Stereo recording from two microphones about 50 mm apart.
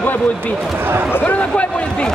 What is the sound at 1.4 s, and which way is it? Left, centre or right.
Speech, left.